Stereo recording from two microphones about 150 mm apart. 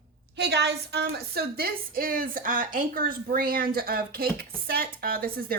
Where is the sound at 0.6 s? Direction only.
90° right.